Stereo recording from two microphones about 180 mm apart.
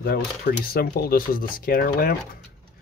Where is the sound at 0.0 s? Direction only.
60° left (ahead or behind).